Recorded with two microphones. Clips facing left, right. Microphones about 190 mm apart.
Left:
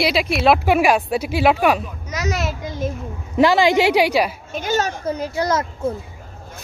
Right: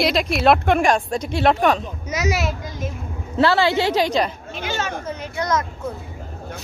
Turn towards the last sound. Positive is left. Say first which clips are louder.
# left 3 dB
turn(degrees=30)  # may be behind; listen again after turning